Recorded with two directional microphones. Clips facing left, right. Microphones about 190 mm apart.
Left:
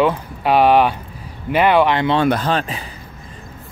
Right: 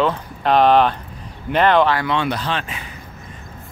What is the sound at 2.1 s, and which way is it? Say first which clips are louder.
Speech: left 5 dB; 45° left (ahead or behind).